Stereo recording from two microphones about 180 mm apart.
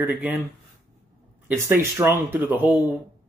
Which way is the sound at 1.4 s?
15° right (ahead or behind).